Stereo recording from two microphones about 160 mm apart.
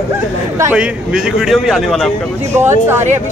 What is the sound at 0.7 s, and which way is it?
A man's voice, 5° right (ahead or behind).